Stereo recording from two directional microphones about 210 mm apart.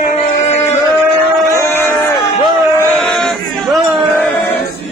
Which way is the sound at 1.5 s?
10° left (ahead or behind).